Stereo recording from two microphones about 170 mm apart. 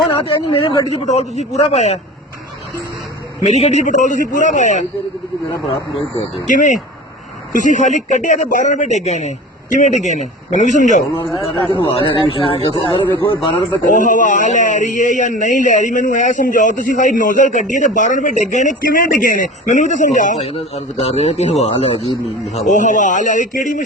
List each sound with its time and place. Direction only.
0.4 s speech: 30° left (ahead or behind)
1.0 s a man's voice: 40° left (ahead or behind)
3.4 s a man's voice: 40° left (ahead or behind)
6.0 s a man's voice: 35° left (ahead or behind)
11.2 s speech: 20° left (ahead or behind)
11.8 s a man's voice: 30° left (ahead or behind)
13.9 s a man's voice: 50° left (ahead or behind)